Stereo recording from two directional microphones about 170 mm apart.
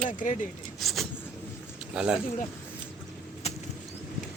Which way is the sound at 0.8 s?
Centre (ahead or behind).